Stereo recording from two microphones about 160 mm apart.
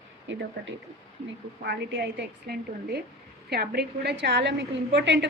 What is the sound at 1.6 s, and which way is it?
A woman's voice, 90° right.